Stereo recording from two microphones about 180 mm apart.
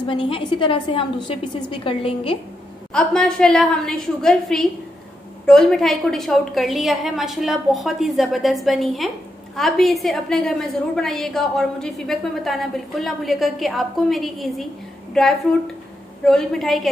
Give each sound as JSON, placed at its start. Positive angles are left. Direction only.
{"t": 0.0, "sound": "a woman's voice", "side_deg": 30}
{"t": 2.9, "sound": "a woman's voice", "side_deg": 5}